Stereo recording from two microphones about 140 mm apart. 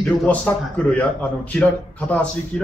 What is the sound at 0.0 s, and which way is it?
A man's voice, 10° left (ahead or behind).